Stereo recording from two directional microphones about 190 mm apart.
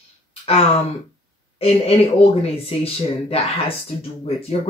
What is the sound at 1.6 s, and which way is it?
Speech, 30° left (ahead or behind).